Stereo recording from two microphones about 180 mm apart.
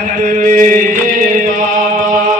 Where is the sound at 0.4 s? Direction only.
50° right (ahead or behind).